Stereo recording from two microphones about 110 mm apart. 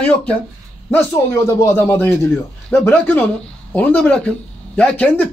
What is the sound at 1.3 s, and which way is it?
Speech, 30° left (ahead or behind).